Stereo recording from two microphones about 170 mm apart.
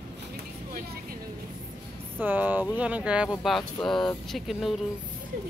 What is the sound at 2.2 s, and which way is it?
Speech, 10° right (ahead or behind).